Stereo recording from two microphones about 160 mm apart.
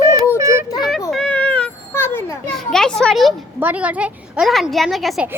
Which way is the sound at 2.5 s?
5° left (ahead or behind).